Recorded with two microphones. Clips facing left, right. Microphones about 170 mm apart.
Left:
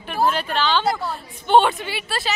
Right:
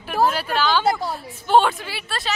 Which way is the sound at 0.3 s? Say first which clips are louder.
Even; 5° right (ahead or behind).